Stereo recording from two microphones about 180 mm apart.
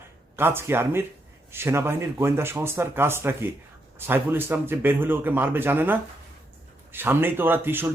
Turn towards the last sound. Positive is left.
turn(degrees=-10)  # may be behind; listen again after turning